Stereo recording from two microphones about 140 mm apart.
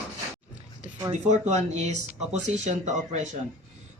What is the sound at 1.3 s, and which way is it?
Speech, 55° right (ahead or behind).